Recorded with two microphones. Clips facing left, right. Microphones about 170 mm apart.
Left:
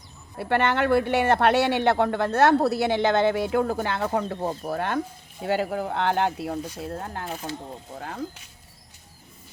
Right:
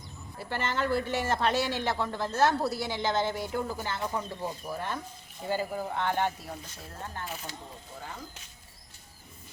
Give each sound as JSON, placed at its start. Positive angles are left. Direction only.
{"t": 0.3, "sound": "speech", "side_deg": 65}
{"t": 6.8, "sound": "speech", "side_deg": 65}
{"t": 7.3, "sound": "speech", "side_deg": 40}
{"t": 7.9, "sound": "speech", "side_deg": 80}